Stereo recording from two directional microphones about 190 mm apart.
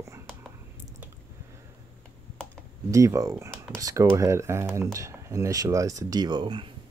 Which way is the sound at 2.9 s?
15° right (ahead or behind).